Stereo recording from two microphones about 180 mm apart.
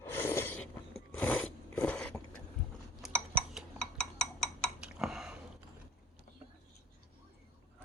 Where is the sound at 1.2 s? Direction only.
10° left (ahead or behind).